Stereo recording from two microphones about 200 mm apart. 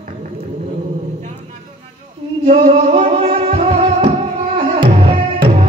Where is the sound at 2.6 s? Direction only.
35° right (ahead or behind).